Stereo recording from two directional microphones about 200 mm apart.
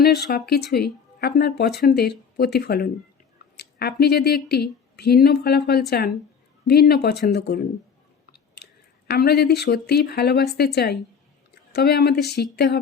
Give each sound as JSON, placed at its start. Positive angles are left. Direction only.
{"t": 0.0, "sound": "speech", "side_deg": 50}
{"t": 9.0, "sound": "speech", "side_deg": 50}